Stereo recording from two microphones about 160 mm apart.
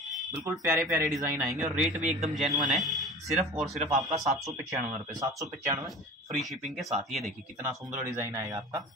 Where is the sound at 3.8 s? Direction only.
45° right (ahead or behind).